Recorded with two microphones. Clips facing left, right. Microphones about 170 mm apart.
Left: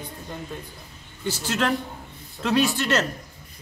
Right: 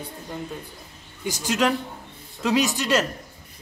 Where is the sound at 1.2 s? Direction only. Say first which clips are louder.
Right 2 dB; 15° right (ahead or behind).